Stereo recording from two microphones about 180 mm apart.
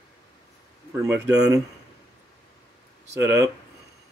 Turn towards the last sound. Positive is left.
turn(degrees=-15)  # may be behind; listen again after turning